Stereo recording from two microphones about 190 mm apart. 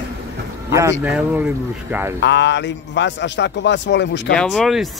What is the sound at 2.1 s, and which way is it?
A man's voice, 65° left (ahead or behind).